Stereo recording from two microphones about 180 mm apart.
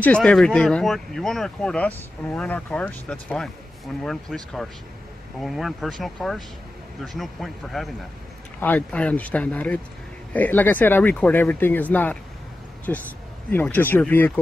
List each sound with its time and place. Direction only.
0.0 s speech: 5° left (ahead or behind)